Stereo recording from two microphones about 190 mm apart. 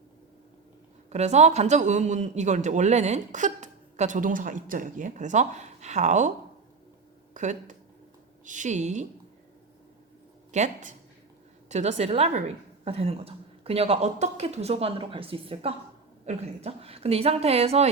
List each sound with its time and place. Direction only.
1.1 s a man's voice: 35° right (ahead or behind)
7.3 s a man's voice: 40° right (ahead or behind)
10.5 s a man's voice: 40° right (ahead or behind)